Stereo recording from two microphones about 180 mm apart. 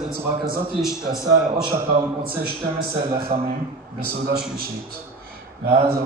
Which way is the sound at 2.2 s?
55° right (ahead or behind).